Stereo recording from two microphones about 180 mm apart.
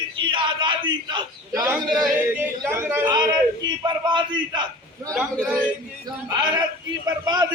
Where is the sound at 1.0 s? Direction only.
20° right (ahead or behind).